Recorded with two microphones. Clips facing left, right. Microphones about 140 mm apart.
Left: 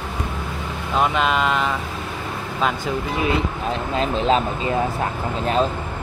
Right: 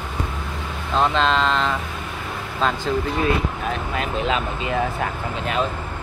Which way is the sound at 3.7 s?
30° left (ahead or behind).